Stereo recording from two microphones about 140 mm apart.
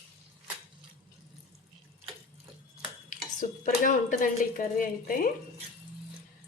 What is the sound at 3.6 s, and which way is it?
Speech, 70° left (ahead or behind).